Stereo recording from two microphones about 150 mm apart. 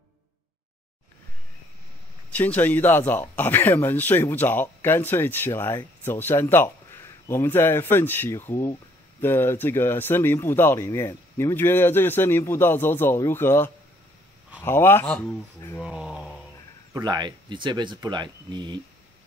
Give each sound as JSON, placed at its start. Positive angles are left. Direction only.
{"t": 2.3, "sound": "speech", "side_deg": 10}
{"t": 15.8, "sound": "a sound", "side_deg": -5}
{"t": 16.9, "sound": "speech", "side_deg": -30}